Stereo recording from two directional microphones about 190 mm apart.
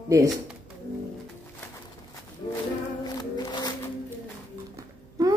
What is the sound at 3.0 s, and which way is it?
Music, 20° left (ahead or behind).